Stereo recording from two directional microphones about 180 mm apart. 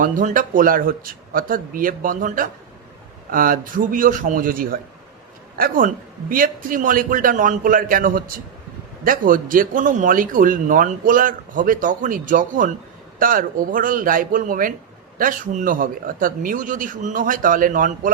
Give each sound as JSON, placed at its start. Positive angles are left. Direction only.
{"t": 0.0, "sound": "speech", "side_deg": -45}